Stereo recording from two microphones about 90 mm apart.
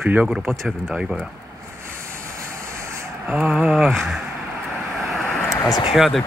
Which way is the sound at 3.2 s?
10° right (ahead or behind).